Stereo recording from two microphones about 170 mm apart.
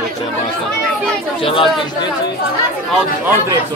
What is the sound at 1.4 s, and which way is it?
Speech, 30° left (ahead or behind).